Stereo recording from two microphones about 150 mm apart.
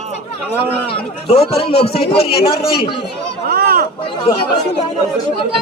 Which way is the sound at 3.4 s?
90° right.